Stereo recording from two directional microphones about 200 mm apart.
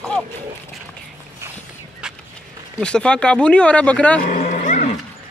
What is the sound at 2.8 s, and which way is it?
Speech, 5° left (ahead or behind).